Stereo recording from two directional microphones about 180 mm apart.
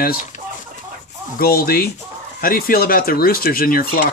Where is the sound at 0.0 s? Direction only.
55° left (ahead or behind).